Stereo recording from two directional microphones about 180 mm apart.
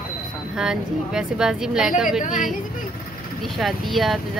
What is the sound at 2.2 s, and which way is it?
Speech, 45° left (ahead or behind).